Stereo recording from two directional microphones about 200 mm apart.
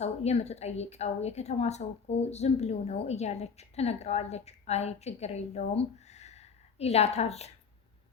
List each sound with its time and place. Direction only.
0.0 s a woman's voice: 30° left (ahead or behind)